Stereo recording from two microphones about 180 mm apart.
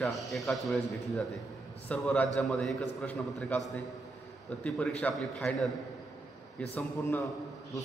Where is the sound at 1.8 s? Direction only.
10° left (ahead or behind).